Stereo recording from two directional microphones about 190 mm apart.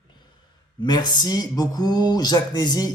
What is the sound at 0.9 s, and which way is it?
Speech, 20° left (ahead or behind).